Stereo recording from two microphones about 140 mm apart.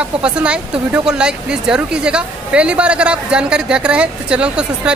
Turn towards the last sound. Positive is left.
turn(degrees=-5)  # may be behind; listen again after turning